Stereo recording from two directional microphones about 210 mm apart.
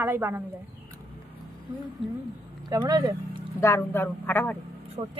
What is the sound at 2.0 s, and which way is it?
Speech, centre (ahead or behind).